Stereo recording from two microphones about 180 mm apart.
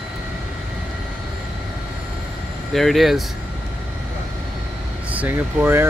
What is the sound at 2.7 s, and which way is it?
Speech, centre (ahead or behind).